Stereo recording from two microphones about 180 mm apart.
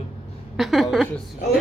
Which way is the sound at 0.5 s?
Centre (ahead or behind).